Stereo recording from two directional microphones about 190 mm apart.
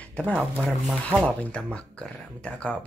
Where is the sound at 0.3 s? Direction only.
Centre (ahead or behind).